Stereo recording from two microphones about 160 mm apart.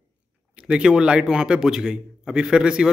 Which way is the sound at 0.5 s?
5° right (ahead or behind).